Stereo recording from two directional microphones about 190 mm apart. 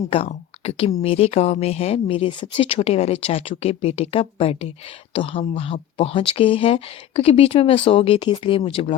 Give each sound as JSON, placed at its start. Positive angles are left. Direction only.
{"t": 0.1, "sound": "speech", "side_deg": 30}